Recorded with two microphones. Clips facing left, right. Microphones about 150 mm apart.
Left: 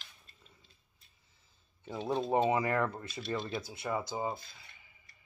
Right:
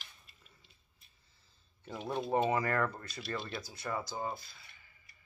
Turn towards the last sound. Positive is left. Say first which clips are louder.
# left 3 dB
turn(degrees=15)  # may be behind; listen again after turning